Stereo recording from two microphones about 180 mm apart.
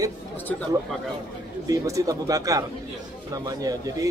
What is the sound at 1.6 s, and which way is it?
Speech, 20° right (ahead or behind).